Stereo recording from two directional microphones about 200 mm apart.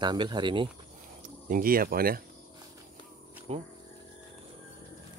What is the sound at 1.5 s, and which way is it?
Speech, 45° right (ahead or behind).